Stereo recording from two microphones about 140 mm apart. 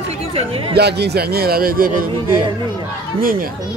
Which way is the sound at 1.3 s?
90° right.